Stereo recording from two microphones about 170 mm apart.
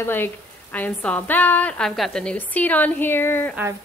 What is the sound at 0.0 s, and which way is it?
A woman's voice, 10° left (ahead or behind).